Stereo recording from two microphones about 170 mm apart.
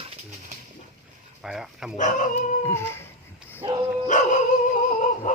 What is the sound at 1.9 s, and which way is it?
Dog, 45° left (ahead or behind).